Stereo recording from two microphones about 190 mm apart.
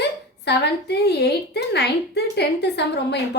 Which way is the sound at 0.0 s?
60° left (ahead or behind).